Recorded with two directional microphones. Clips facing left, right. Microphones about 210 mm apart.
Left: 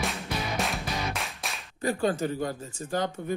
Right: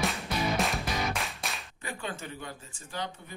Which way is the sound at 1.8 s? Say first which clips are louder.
Left 13 dB; 40° left (ahead or behind).